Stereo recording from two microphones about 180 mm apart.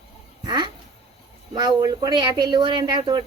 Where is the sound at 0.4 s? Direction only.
25° right (ahead or behind).